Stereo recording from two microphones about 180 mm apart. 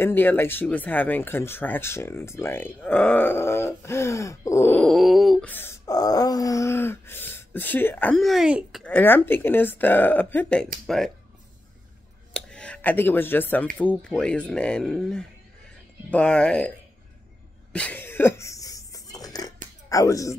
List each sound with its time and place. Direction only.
0.0 s speech: 10° left (ahead or behind); by 8.8 s 5° right (ahead or behind)
8.8 s speech: 10° left (ahead or behind)
12.4 s speech: 5° left (ahead or behind)
17.7 s a sound: 10° left (ahead or behind)
19.9 s speech: 20° left (ahead or behind)